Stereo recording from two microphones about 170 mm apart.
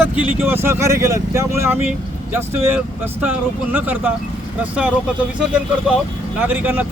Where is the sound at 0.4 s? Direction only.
15° right (ahead or behind).